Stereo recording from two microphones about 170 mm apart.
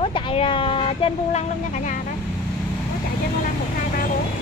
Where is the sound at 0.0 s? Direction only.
35° left (ahead or behind).